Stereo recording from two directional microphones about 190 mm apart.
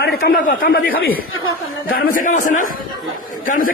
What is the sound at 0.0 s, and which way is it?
A man's voice, 50° left (ahead or behind).